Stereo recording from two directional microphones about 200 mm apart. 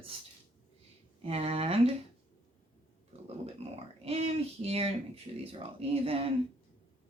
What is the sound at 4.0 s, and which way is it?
A woman's voice, 30° right (ahead or behind).